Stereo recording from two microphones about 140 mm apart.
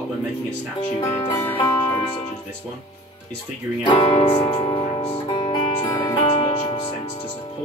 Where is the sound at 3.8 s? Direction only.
35° left (ahead or behind).